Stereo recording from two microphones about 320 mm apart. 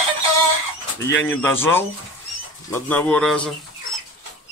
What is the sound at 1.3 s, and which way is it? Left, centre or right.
Speech, centre.